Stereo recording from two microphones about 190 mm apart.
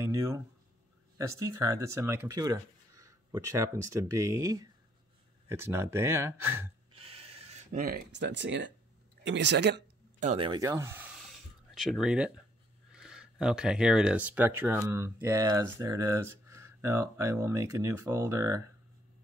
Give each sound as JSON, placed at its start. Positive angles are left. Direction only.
{"t": 0.1, "sound": "a sound", "side_deg": -15}
{"t": 1.1, "sound": "speech", "side_deg": -15}
{"t": 6.9, "sound": "a sound", "side_deg": -30}
{"t": 7.7, "sound": "speech", "side_deg": -50}
{"t": 10.2, "sound": "speech", "side_deg": -30}
{"t": 10.6, "sound": "speech", "side_deg": -15}